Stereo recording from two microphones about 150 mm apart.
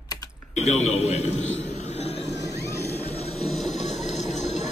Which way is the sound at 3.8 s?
50° left (ahead or behind).